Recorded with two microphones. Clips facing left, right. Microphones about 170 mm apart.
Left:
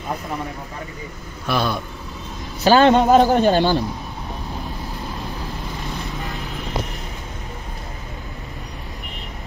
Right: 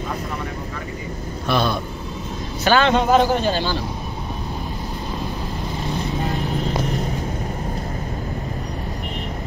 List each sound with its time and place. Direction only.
1.5 s a man's voice: 10° left (ahead or behind)
2.6 s a man's voice: 40° left (ahead or behind)
6.2 s vehicle: 40° right (ahead or behind)